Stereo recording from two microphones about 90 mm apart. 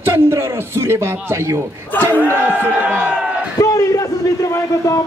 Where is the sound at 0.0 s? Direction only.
30° right (ahead or behind).